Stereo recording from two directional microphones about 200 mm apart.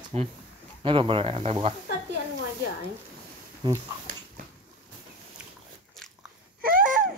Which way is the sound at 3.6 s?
20° right (ahead or behind).